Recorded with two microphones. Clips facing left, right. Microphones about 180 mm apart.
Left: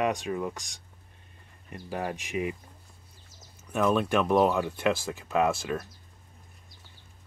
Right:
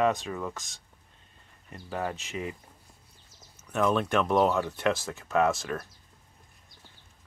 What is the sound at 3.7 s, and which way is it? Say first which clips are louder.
Speech: left 1 dB; 10° left (ahead or behind).